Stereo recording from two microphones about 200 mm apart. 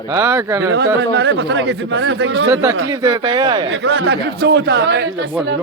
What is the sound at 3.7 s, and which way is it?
Speech, 60° right (ahead or behind).